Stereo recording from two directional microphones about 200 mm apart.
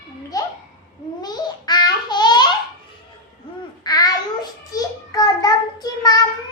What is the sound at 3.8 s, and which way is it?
Babbling, 20° left (ahead or behind).